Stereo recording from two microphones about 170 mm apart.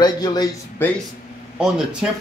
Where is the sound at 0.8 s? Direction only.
10° left (ahead or behind).